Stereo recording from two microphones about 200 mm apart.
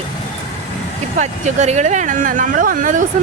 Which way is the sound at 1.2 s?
35° right (ahead or behind).